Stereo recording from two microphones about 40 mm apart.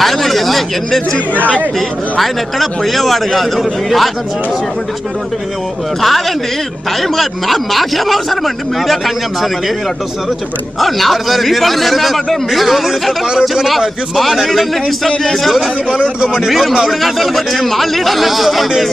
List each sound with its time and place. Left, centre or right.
0.0 s a sound: centre
2.1 s a man's voice: centre
5.9 s a man's voice: centre
10.8 s a man's voice: centre
13.3 s a man's voice: centre
13.7 s a man's voice: centre